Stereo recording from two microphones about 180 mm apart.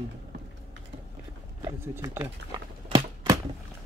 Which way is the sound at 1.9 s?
15° right (ahead or behind).